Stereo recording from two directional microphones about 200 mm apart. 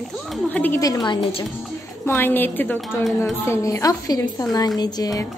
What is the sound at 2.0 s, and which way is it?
A woman's voice, 10° left (ahead or behind).